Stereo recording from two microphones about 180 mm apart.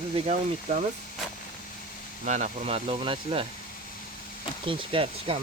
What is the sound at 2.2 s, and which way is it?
Speech, 40° right (ahead or behind).